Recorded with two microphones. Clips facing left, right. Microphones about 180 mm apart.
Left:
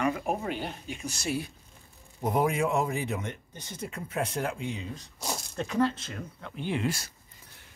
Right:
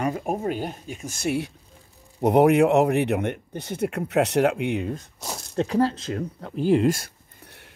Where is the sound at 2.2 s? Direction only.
70° right (ahead or behind).